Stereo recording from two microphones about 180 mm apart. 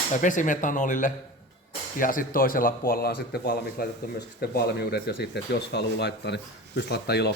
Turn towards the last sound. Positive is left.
turn(degrees=65)  # may be behind; listen again after turning